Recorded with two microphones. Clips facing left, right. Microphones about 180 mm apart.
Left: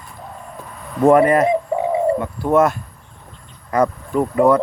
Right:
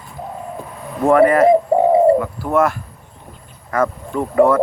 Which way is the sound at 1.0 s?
20° left (ahead or behind).